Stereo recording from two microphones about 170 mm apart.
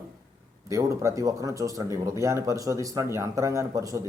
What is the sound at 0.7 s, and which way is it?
A man's voice, 20° right (ahead or behind).